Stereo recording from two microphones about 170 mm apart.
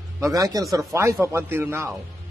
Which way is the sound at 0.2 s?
20° right (ahead or behind).